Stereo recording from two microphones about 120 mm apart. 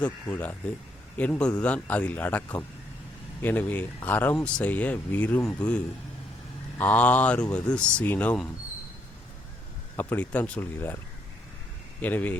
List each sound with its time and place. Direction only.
0.0 s a man's voice: 15° left (ahead or behind)
6.7 s a man's voice: 15° left (ahead or behind)
10.0 s a man's voice: 15° left (ahead or behind)
12.0 s a man's voice: 15° left (ahead or behind)